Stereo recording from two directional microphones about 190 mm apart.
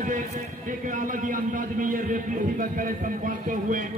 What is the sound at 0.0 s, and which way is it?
A man's voice, 45° right (ahead or behind).